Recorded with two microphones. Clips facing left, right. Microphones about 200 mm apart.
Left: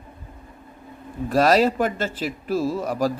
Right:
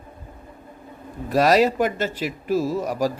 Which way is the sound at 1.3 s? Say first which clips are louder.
Even; 10° right (ahead or behind).